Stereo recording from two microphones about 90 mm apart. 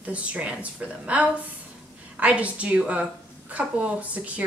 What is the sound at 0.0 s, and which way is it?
A woman's voice, 15° right (ahead or behind).